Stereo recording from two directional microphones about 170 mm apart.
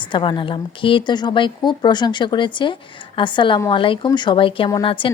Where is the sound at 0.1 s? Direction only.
30° left (ahead or behind).